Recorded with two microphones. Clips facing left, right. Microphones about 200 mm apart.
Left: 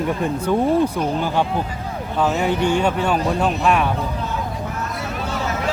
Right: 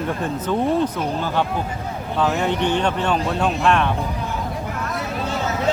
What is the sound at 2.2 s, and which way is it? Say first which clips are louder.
Speech: left 1 dB; 10° left (ahead or behind).